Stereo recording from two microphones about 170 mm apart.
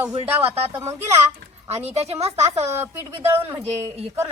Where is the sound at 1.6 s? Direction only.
40° right (ahead or behind).